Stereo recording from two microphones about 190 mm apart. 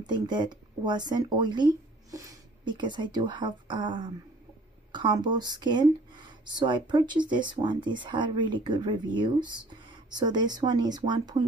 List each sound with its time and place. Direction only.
0.0 s speech: 20° right (ahead or behind)